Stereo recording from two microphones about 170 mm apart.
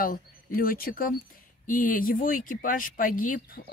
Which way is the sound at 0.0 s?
55° left (ahead or behind).